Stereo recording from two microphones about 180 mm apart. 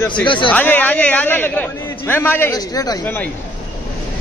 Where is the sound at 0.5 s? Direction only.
10° left (ahead or behind).